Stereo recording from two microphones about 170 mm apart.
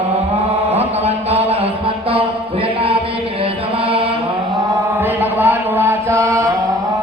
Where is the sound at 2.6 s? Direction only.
35° right (ahead or behind).